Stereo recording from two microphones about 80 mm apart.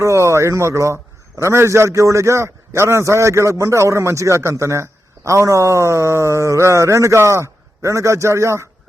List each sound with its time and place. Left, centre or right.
0.0 s a man's voice: right